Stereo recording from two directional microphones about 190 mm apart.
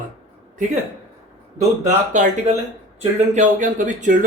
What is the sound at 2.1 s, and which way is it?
Speech, 40° right (ahead or behind).